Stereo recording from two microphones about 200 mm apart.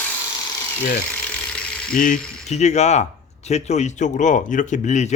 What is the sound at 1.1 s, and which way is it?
Ratchet, 5° left (ahead or behind).